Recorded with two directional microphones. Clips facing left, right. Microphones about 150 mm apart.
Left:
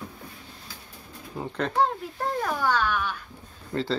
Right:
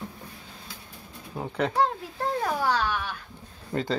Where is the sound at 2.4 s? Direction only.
30° right (ahead or behind).